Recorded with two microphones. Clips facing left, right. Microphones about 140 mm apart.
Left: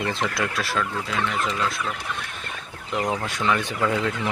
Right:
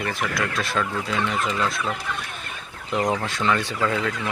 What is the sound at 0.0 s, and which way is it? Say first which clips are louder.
Speech: left 1 dB; 20° left (ahead or behind).